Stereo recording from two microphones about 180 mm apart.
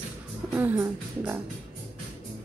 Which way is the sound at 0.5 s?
10° right (ahead or behind).